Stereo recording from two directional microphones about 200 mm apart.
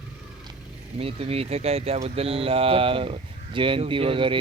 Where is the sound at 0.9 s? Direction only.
30° right (ahead or behind).